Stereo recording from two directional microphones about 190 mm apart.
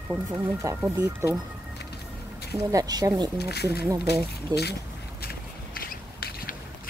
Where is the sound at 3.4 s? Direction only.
60° left (ahead or behind).